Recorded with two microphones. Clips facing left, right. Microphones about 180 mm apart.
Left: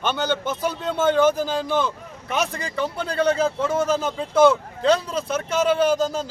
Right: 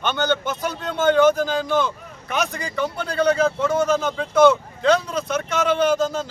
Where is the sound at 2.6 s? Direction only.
30° left (ahead or behind).